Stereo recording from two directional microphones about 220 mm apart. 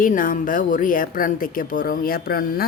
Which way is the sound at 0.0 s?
40° left (ahead or behind).